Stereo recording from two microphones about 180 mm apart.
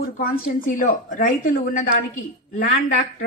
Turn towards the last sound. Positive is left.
turn(degrees=50)  # may be behind; listen again after turning